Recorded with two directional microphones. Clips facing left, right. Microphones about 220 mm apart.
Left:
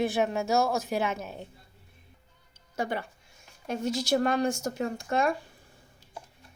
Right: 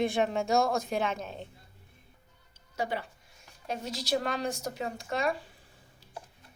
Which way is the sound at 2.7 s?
50° left (ahead or behind).